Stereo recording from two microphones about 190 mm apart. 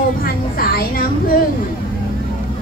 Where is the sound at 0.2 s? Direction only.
50° left (ahead or behind).